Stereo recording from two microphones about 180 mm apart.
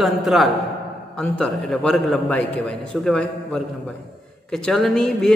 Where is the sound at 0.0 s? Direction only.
Centre (ahead or behind).